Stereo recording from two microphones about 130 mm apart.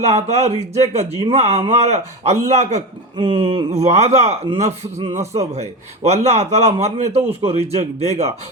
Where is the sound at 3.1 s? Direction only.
40° right (ahead or behind).